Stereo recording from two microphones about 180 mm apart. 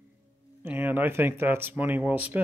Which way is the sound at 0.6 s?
10° right (ahead or behind).